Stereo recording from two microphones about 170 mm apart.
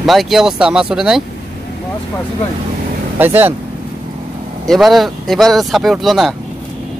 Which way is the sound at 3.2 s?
10° right (ahead or behind).